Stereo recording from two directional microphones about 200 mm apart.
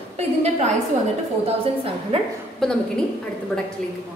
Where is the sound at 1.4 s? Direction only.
30° right (ahead or behind).